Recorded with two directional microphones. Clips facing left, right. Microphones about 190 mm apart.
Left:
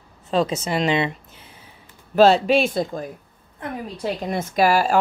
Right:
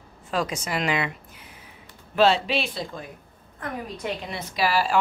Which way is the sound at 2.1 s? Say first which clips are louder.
Left 6 dB; 40° left (ahead or behind).